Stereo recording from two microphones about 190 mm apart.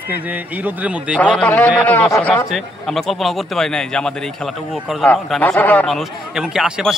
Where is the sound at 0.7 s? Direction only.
5° right (ahead or behind).